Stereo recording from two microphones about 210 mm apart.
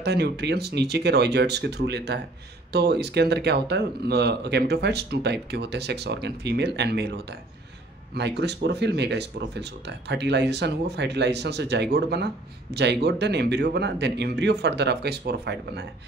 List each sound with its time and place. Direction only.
0.0 s speech: 50° right (ahead or behind)